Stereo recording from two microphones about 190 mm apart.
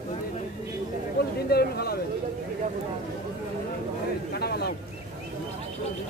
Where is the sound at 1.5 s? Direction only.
55° left (ahead or behind).